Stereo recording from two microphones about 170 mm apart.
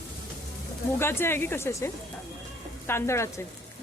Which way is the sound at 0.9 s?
15° left (ahead or behind).